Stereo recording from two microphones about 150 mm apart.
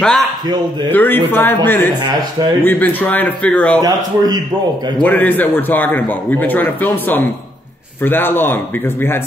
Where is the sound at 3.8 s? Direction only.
25° right (ahead or behind).